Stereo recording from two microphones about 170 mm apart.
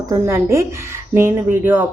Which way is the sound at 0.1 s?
15° right (ahead or behind).